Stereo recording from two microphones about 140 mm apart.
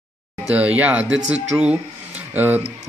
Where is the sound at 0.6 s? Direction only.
10° right (ahead or behind).